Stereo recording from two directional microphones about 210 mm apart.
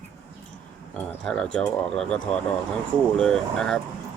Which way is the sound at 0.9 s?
5° left (ahead or behind).